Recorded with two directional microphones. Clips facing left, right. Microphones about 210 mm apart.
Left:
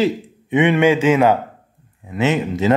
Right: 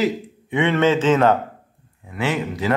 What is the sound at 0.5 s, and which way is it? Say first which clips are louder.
Speech: left 3 dB; 15° left (ahead or behind).